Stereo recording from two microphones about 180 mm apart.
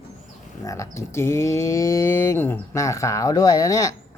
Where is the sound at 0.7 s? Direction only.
15° left (ahead or behind).